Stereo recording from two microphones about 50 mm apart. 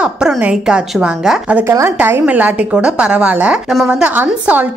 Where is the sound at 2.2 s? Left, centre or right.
Right.